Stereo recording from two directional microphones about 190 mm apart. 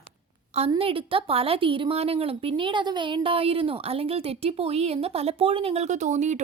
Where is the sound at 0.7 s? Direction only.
30° right (ahead or behind).